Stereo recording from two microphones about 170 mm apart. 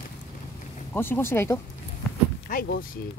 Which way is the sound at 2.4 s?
55° left (ahead or behind).